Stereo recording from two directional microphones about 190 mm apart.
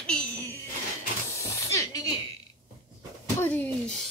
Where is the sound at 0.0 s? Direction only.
5° left (ahead or behind).